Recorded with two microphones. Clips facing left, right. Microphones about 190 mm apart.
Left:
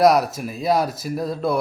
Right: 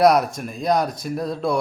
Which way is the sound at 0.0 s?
Centre (ahead or behind).